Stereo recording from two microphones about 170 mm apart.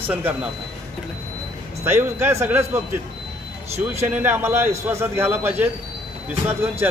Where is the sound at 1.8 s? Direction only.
15° right (ahead or behind).